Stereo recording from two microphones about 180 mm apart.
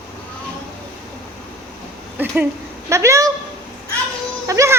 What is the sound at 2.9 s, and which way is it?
Speech, 15° right (ahead or behind).